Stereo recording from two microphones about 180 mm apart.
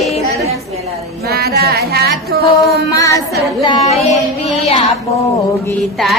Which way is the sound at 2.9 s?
20° left (ahead or behind).